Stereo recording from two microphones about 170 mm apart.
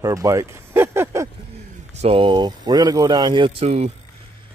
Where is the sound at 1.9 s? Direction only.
35° right (ahead or behind).